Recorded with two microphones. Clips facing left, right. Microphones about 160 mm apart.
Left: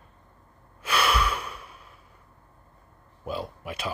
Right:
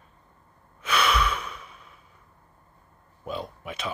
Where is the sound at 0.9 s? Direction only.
10° left (ahead or behind).